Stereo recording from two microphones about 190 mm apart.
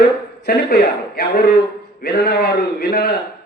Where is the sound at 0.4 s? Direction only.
55° left (ahead or behind).